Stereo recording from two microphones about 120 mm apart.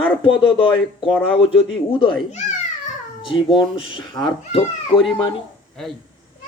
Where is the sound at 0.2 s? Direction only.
45° left (ahead or behind).